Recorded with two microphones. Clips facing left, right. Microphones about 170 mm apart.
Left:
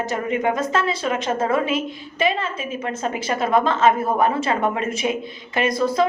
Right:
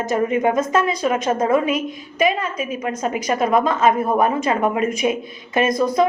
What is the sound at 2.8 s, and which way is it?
Speech, 15° right (ahead or behind).